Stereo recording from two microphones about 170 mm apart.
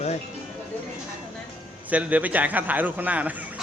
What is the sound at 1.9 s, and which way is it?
A man's voice, 10° right (ahead or behind).